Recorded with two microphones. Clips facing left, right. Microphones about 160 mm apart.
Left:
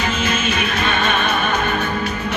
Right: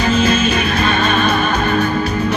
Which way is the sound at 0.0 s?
35° right (ahead or behind).